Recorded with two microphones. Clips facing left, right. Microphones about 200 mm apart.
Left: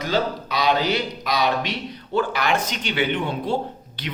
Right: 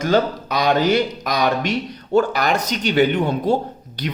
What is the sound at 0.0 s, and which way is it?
Speech, 45° right (ahead or behind).